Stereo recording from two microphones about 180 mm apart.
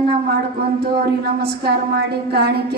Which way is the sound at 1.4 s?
65° right (ahead or behind).